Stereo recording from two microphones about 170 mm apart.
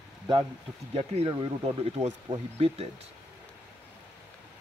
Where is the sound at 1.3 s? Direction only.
25° right (ahead or behind).